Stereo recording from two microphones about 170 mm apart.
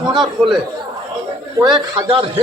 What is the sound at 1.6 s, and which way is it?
Speech, 25° right (ahead or behind).